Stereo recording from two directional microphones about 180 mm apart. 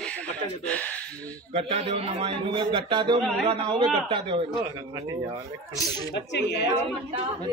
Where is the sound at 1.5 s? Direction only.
35° right (ahead or behind).